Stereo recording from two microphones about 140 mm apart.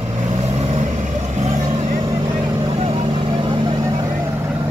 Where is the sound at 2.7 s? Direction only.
45° right (ahead or behind); by 4.1 s 25° right (ahead or behind).